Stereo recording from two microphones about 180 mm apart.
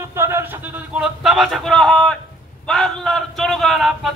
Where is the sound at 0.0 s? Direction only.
15° right (ahead or behind); by 2.1 s centre (ahead or behind).